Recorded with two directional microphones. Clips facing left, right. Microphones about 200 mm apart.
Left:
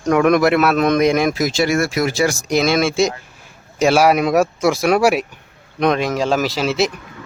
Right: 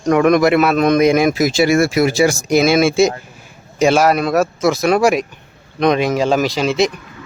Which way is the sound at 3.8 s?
5° left (ahead or behind).